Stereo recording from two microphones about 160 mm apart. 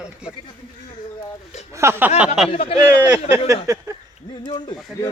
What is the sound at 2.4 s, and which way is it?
Speech, 40° left (ahead or behind).